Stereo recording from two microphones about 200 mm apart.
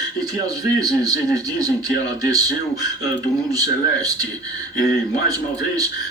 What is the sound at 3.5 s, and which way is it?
Speech, 20° right (ahead or behind).